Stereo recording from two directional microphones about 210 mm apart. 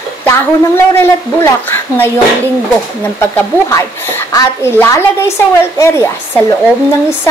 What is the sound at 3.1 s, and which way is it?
Speech, 15° left (ahead or behind).